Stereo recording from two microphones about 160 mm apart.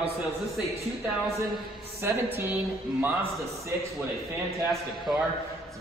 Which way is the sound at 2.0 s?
15° right (ahead or behind).